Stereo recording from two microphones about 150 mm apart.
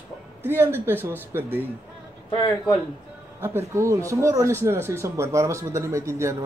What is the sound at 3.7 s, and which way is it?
Speech, 20° right (ahead or behind).